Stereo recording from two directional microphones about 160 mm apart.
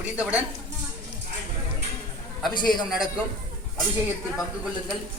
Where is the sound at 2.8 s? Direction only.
5° right (ahead or behind).